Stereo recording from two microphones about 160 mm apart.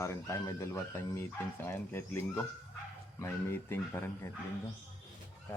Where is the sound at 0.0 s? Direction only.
20° left (ahead or behind).